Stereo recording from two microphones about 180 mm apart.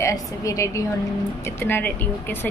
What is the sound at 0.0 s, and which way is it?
Speech, 15° left (ahead or behind).